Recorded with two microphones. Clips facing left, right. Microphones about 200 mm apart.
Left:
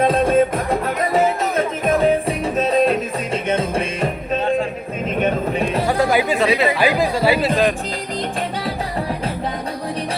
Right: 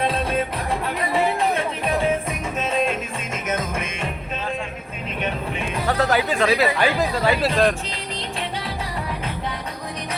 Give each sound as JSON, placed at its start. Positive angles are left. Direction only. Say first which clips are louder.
{"t": 0.0, "sound": "music", "louder": "left 8 dB", "side_deg": 45}
{"t": 5.9, "sound": "music", "louder": "left 1 dB", "side_deg": 10}
{"t": 6.7, "sound": "speech", "louder": "left 3 dB", "side_deg": 10}
{"t": 8.4, "sound": "music", "louder": "left 5 dB", "side_deg": 40}